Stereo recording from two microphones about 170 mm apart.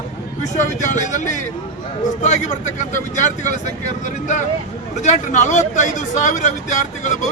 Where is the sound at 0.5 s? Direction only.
45° left (ahead or behind).